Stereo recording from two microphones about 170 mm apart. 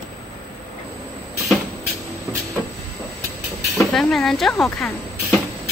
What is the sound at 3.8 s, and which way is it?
Speech, centre (ahead or behind).